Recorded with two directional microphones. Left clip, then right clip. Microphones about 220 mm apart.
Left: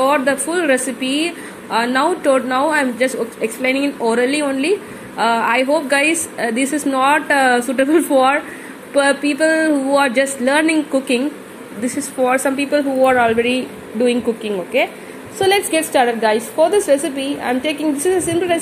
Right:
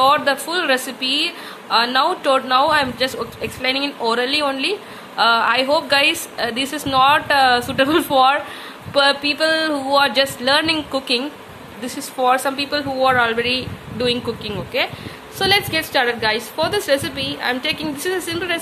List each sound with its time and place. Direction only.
0.0 s a woman's voice: 5° right (ahead or behind)
1.0 s a woman's voice: 25° left (ahead or behind)
1.7 s a woman's voice: centre (ahead or behind)